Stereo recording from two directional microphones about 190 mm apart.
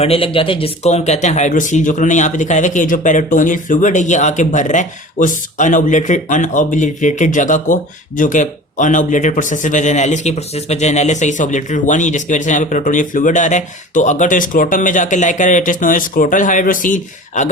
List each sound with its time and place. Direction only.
0.0 s speech: 30° left (ahead or behind)